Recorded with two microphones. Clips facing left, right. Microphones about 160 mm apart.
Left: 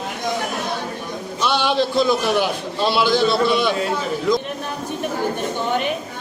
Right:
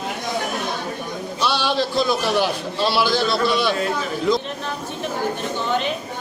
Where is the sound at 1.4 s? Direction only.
20° left (ahead or behind).